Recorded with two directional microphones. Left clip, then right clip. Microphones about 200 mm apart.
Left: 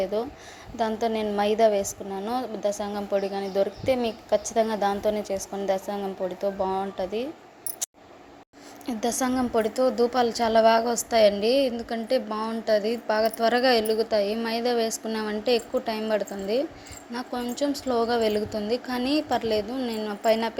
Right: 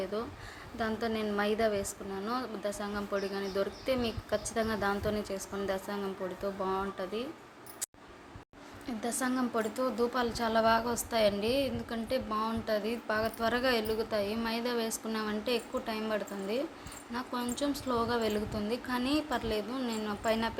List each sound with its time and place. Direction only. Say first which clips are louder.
0.0 s a woman's voice: left 9 dB; 20° left (ahead or behind)
8.9 s a woman's voice: left 8 dB; 30° left (ahead or behind)